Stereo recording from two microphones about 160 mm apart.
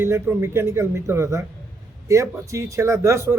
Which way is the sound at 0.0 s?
15° right (ahead or behind).